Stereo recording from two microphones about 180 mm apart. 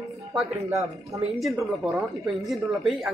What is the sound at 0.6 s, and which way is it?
Speech, 15° right (ahead or behind).